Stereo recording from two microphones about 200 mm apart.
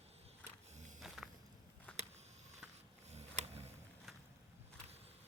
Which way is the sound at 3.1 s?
35° right (ahead or behind).